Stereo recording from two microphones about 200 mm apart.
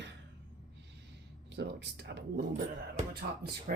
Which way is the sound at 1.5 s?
55° right (ahead or behind).